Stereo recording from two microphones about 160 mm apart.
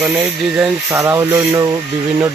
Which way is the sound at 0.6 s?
15° right (ahead or behind).